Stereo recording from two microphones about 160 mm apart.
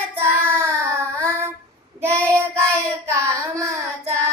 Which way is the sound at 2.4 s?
15° right (ahead or behind).